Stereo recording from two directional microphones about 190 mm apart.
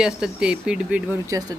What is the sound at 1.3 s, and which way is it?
Speech, 20° right (ahead or behind).